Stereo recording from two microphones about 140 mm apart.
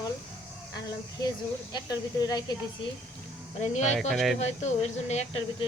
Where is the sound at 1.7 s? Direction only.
25° left (ahead or behind).